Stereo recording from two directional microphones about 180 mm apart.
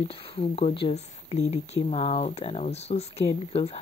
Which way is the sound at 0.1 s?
35° left (ahead or behind).